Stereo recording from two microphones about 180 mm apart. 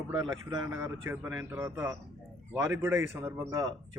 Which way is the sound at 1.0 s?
15° right (ahead or behind).